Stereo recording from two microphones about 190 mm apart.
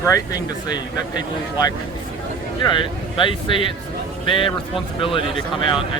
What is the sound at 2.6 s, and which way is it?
Speech, 25° left (ahead or behind).